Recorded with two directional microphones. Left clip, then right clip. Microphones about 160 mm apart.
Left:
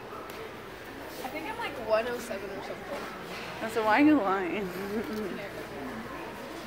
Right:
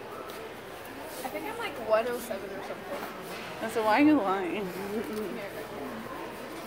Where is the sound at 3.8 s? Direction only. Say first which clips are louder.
Even; 5° right (ahead or behind).